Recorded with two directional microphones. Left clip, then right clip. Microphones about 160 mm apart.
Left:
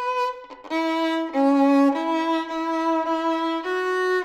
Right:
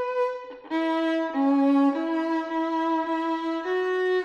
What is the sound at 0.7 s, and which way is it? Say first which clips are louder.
Music: left 2 dB; 20° left (ahead or behind).